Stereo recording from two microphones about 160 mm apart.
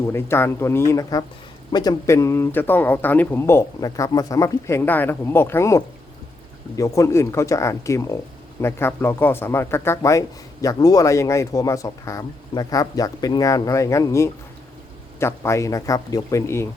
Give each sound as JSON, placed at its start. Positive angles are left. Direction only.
{"t": 0.0, "sound": "a man's voice", "side_deg": 15}